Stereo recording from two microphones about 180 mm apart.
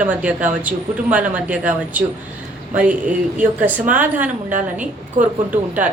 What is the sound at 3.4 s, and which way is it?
Speech, 10° right (ahead or behind).